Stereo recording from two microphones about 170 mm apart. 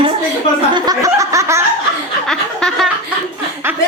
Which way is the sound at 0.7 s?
20° right (ahead or behind).